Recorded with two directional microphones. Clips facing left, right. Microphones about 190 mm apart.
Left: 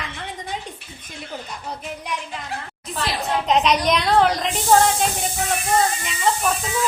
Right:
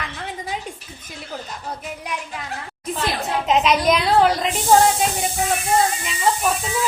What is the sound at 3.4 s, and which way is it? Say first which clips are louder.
Speech: right 2 dB; 5° right (ahead or behind).